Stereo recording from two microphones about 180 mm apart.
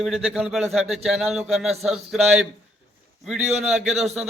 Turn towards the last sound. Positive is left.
turn(degrees=0)  # may be behind; listen again after turning